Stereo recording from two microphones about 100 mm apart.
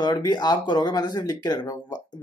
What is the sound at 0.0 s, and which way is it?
Speech, 45° left (ahead or behind).